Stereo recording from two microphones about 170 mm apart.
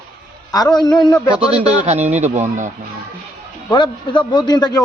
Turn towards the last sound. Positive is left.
turn(degrees=25)  # may be behind; listen again after turning